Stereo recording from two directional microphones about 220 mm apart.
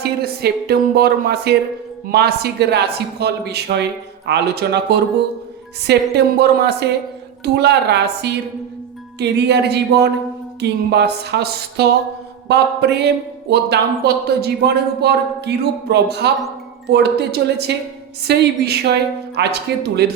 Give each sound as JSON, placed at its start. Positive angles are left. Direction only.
{"t": 0.0, "sound": "speech", "side_deg": -45}